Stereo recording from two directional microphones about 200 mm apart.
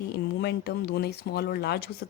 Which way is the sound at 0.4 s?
55° left (ahead or behind).